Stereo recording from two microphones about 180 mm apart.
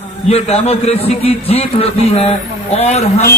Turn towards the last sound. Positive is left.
turn(degrees=35)  # may be behind; listen again after turning